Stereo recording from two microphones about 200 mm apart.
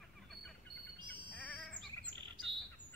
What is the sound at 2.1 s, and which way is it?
Chirp, 25° right (ahead or behind).